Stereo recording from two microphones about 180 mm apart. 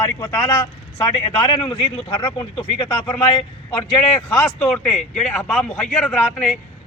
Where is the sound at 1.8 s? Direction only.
25° left (ahead or behind).